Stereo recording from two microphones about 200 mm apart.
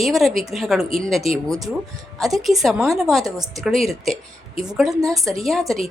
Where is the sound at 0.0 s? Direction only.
Centre (ahead or behind).